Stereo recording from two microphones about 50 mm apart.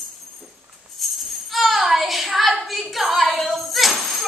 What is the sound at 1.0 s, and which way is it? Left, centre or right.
Music, centre.